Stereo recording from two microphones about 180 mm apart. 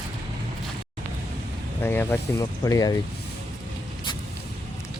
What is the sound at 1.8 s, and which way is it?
Speech, 10° left (ahead or behind).